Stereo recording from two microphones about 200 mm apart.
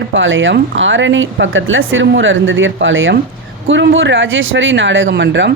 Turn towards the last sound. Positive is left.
turn(degrees=-65)  # may be behind; listen again after turning